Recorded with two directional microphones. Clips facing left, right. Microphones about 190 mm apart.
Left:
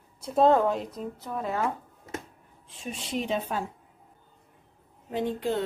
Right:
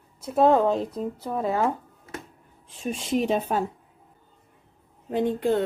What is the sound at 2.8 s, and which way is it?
Speech, 45° right (ahead or behind).